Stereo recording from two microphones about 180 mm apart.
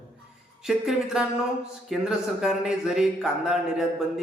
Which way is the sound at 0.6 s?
5° right (ahead or behind).